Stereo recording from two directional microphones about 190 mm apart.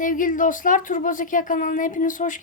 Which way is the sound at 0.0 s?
45° left (ahead or behind).